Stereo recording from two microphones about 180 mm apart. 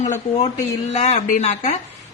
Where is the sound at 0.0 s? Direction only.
40° left (ahead or behind).